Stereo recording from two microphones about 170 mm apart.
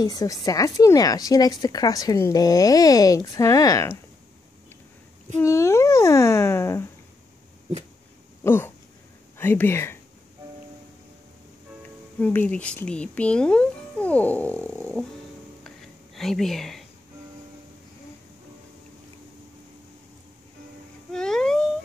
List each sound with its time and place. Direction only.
0.0 s a woman's voice: 20° left (ahead or behind)
5.4 s speech: 15° left (ahead or behind)
8.5 s speech: 10° left (ahead or behind)
12.2 s speech: 10° left (ahead or behind)
16.2 s speech: centre (ahead or behind)
21.1 s a sound: 5° left (ahead or behind)